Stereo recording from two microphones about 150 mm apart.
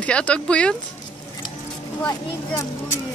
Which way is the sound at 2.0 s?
15° left (ahead or behind).